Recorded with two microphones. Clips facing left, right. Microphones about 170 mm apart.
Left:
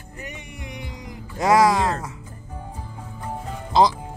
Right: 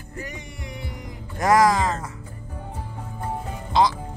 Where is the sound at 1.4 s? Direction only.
10° left (ahead or behind).